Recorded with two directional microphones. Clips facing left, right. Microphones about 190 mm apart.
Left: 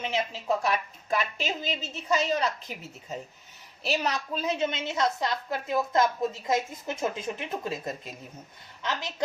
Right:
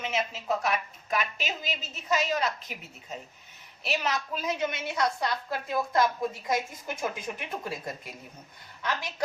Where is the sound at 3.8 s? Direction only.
35° left (ahead or behind).